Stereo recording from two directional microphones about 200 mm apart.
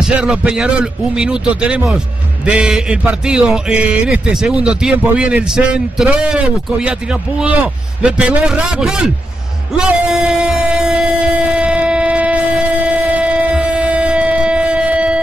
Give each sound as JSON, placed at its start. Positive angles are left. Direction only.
{"t": 0.0, "sound": "speech", "side_deg": -5}
{"t": 11.5, "sound": "train", "side_deg": -5}
{"t": 12.8, "sound": "a sound", "side_deg": -5}